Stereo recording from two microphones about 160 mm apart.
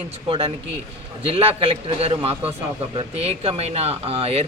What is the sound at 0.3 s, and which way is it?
Speech, 35° right (ahead or behind).